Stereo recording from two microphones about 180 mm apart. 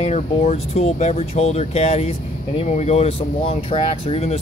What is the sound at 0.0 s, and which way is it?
Speech, 40° left (ahead or behind).